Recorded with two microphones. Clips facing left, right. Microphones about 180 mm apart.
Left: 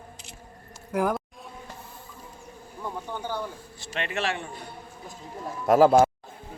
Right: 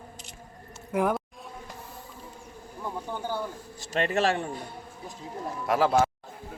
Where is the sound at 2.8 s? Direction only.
5° right (ahead or behind).